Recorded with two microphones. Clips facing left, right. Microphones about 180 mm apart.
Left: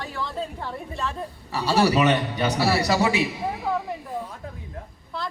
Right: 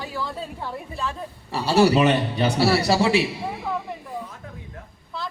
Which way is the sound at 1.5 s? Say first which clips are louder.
Right 3 dB; 25° right (ahead or behind).